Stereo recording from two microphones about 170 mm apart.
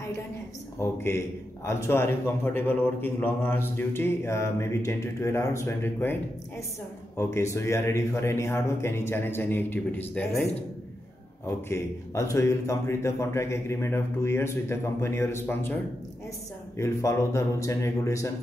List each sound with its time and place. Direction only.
0.7 s a man's voice: 15° left (ahead or behind)
7.2 s a man's voice: 15° left (ahead or behind)
11.7 s a man's voice: 15° left (ahead or behind)